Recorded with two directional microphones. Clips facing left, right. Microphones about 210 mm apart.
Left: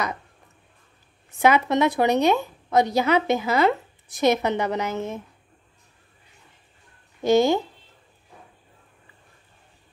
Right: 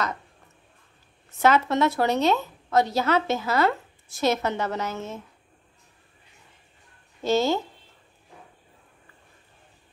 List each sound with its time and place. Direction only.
1.4 s a woman's voice: 15° left (ahead or behind)
7.2 s a woman's voice: 15° left (ahead or behind)